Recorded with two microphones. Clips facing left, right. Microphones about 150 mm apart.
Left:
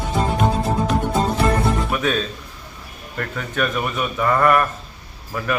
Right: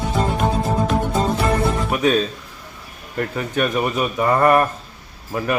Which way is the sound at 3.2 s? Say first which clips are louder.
Right 3 dB; 30° right (ahead or behind).